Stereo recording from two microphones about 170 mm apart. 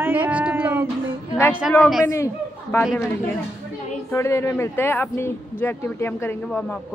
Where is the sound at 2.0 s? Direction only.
15° left (ahead or behind).